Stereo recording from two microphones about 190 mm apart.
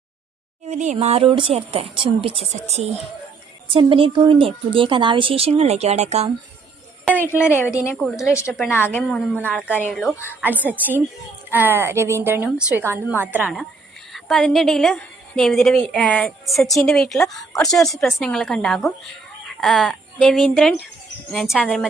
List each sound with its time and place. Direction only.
0.7 s a woman's voice: 40° right (ahead or behind)
7.2 s a woman's voice: 15° left (ahead or behind)
9.3 s a woman's voice: 10° right (ahead or behind)